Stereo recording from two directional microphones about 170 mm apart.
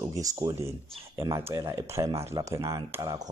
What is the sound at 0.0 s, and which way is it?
Speech, 20° right (ahead or behind).